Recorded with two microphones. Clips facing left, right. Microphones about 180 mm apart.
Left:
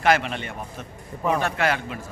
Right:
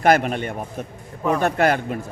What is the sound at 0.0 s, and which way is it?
A man's voice, 50° right (ahead or behind).